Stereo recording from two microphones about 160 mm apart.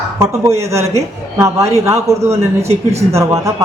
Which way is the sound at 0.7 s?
20° right (ahead or behind).